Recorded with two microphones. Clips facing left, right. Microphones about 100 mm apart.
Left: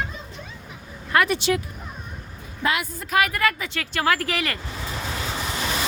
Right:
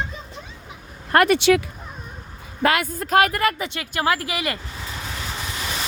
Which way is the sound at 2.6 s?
60° right (ahead or behind).